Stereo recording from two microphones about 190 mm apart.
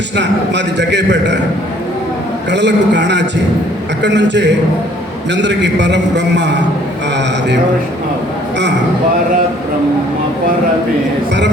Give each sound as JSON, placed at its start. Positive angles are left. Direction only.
{"t": 0.2, "sound": "a man's voice", "side_deg": -65}
{"t": 2.5, "sound": "a man's voice", "side_deg": -65}